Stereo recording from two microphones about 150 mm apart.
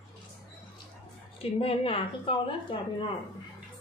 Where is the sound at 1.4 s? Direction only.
40° left (ahead or behind).